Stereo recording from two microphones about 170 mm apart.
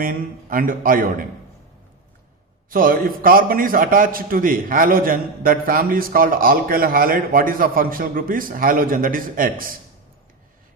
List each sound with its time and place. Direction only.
0.0 s a man's voice: 55° right (ahead or behind)
2.6 s a man's voice: 55° right (ahead or behind)